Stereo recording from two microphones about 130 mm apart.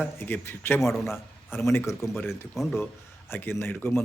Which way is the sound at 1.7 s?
15° left (ahead or behind).